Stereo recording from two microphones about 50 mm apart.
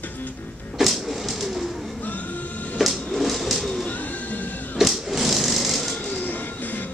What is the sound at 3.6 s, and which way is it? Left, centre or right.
Bird, centre.